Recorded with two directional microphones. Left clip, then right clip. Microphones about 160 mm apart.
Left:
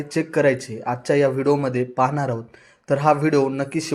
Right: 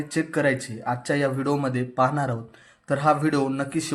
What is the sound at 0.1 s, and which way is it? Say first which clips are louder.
Speech: left 5 dB; 15° left (ahead or behind).